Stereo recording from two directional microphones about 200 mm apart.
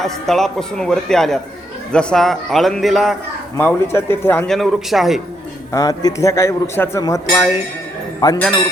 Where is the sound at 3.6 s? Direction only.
10° left (ahead or behind).